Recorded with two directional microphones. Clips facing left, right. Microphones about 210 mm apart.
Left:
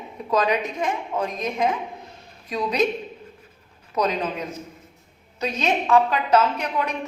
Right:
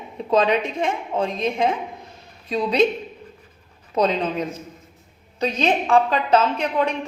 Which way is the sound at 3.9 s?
30° right (ahead or behind).